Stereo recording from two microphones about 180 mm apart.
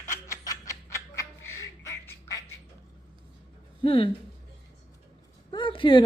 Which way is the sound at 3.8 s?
30° left (ahead or behind).